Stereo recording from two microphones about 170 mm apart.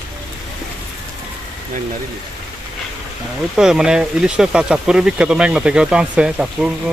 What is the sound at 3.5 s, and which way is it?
Speech, 5° right (ahead or behind).